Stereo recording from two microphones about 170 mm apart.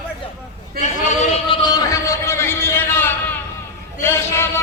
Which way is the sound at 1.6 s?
25° left (ahead or behind).